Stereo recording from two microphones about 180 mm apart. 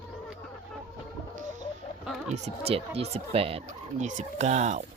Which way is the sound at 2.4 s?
35° right (ahead or behind).